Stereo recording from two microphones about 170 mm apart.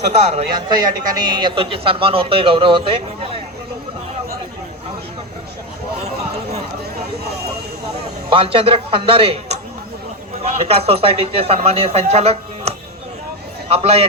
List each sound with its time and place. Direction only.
0.1 s a man's voice: 40° right (ahead or behind)
0.5 s a man's voice: 25° right (ahead or behind)
8.3 s a man's voice: 30° right (ahead or behind)